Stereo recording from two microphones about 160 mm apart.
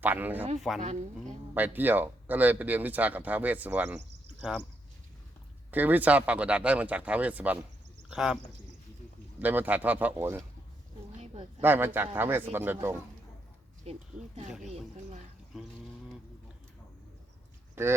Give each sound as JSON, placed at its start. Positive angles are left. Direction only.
{"t": 0.0, "sound": "speech", "side_deg": -10}
{"t": 0.8, "sound": "a woman's voice", "side_deg": -50}
{"t": 1.5, "sound": "speech", "side_deg": -10}
{"t": 5.7, "sound": "speech", "side_deg": -10}
{"t": 9.4, "sound": "speech", "side_deg": -10}
{"t": 11.6, "sound": "speech", "side_deg": -10}
{"t": 13.9, "sound": "speech", "side_deg": -40}
{"t": 17.8, "sound": "speech", "side_deg": -15}